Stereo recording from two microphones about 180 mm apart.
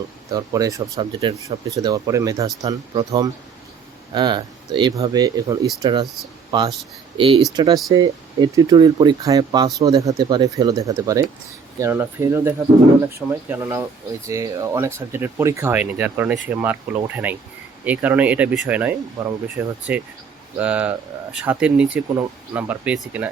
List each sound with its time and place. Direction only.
0.3 s speech: 20° right (ahead or behind)
1.4 s speech: 20° right (ahead or behind)